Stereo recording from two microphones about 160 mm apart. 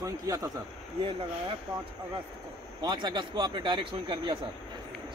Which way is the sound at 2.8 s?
25° right (ahead or behind).